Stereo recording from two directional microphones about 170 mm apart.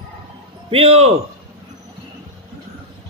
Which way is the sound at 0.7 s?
35° right (ahead or behind).